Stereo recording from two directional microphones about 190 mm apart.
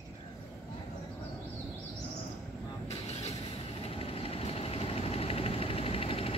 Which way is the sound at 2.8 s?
35° left (ahead or behind).